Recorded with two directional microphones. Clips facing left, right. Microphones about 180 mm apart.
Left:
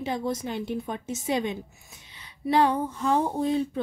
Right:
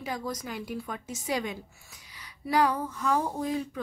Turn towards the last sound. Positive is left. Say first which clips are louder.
# left 5 dB
turn(degrees=30)  # may be behind; listen again after turning